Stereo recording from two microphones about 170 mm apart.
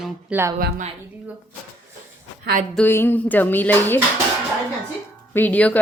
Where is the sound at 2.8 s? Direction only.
15° left (ahead or behind).